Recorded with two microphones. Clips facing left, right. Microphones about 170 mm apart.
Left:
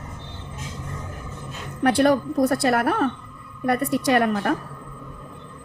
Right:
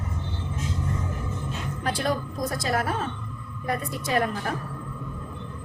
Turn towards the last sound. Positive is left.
turn(degrees=65)  # may be behind; listen again after turning